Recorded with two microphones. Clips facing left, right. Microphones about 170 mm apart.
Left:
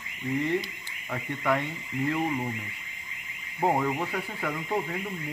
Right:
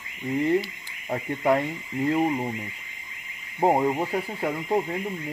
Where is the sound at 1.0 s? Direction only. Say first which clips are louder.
Right 5 dB; 35° right (ahead or behind).